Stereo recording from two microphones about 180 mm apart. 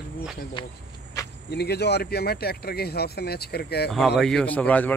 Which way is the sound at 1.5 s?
65° left (ahead or behind).